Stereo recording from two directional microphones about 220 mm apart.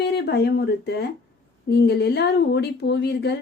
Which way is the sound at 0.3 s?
50° left (ahead or behind).